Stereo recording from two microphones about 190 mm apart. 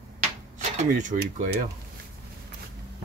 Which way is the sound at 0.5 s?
40° right (ahead or behind).